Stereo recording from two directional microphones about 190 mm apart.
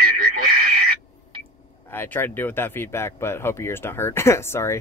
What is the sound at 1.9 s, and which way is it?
Speech, 10° left (ahead or behind).